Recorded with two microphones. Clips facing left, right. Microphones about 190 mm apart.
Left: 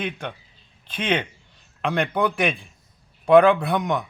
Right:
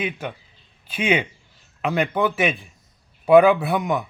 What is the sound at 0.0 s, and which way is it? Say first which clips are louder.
A man's voice: right 2 dB; 5° right (ahead or behind).